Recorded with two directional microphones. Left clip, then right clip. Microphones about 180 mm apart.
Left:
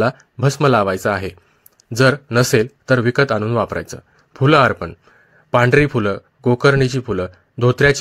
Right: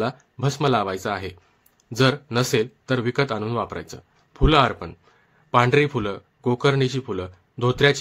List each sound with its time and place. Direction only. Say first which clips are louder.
0.0 s speech: left 8 dB; 35° left (ahead or behind)